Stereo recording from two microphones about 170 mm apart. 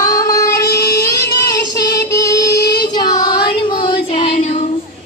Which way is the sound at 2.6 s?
70° left (ahead or behind).